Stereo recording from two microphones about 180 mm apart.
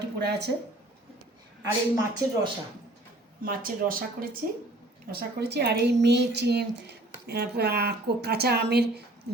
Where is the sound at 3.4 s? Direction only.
50° right (ahead or behind).